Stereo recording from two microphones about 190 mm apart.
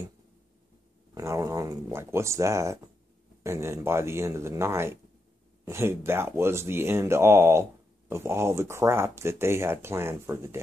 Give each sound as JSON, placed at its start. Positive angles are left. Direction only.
{"t": 1.1, "sound": "speech", "side_deg": -15}